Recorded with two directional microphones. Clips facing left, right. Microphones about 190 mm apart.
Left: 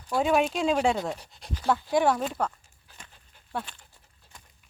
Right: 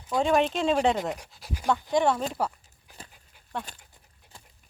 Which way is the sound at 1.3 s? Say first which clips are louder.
Even; 5° right (ahead or behind).